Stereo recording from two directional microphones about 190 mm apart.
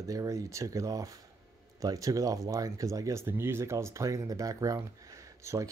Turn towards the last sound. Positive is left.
turn(degrees=-15)  # may be behind; listen again after turning